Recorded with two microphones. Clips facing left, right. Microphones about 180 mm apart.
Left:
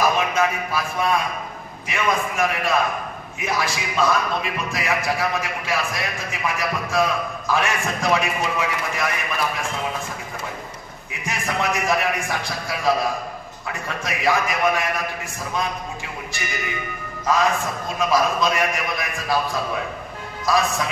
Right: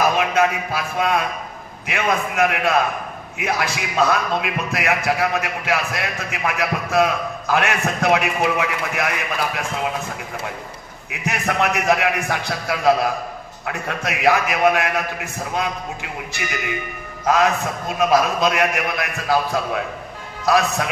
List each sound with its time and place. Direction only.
0.3 s a man's voice: 65° right (ahead or behind)
11.1 s a man's voice: 65° right (ahead or behind)